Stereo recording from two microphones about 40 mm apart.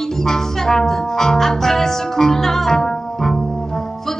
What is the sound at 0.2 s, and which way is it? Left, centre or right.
Music, centre.